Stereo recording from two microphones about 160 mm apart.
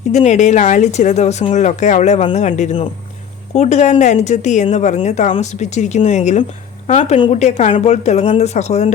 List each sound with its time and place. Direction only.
0.1 s speech: 45° left (ahead or behind)